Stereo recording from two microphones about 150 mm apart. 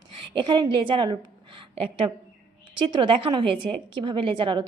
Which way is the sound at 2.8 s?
35° right (ahead or behind).